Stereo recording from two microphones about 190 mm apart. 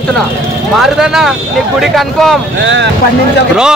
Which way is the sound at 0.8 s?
Centre (ahead or behind).